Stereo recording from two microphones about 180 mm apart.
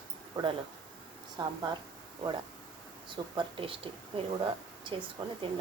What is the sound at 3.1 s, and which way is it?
Speech, 30° right (ahead or behind).